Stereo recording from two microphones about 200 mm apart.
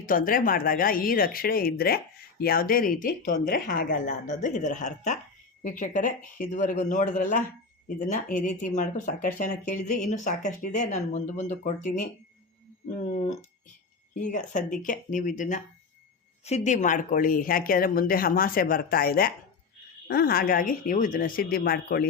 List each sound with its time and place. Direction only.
0.0 s speech: 45° left (ahead or behind)
14.2 s speech: 40° left (ahead or behind)